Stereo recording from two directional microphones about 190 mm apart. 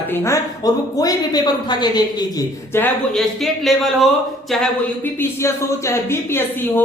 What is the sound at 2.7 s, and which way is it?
A man's voice, 5° left (ahead or behind).